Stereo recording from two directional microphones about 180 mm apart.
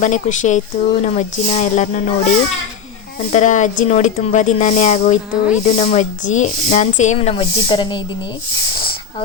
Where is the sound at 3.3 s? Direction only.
40° left (ahead or behind).